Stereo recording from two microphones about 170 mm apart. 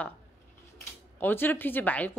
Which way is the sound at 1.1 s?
10° left (ahead or behind).